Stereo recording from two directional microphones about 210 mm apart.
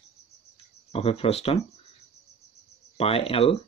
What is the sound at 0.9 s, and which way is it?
Speech, 25° left (ahead or behind).